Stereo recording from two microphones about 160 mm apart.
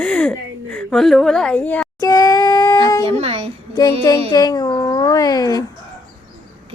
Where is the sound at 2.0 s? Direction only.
20° left (ahead or behind).